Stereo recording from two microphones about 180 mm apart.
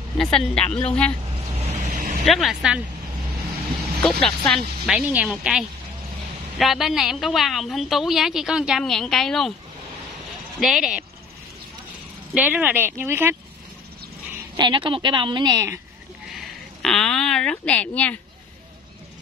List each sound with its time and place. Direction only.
0.2 s a woman's voice: 5° left (ahead or behind)
1.6 s vehicle: 40° right (ahead or behind)
2.2 s a woman's voice: centre (ahead or behind)
4.0 s a woman's voice: centre (ahead or behind)
10.6 s a woman's voice: centre (ahead or behind)
12.4 s speech: 10° right (ahead or behind)
14.6 s a woman's voice: 25° right (ahead or behind)
16.3 s a woman's voice: centre (ahead or behind)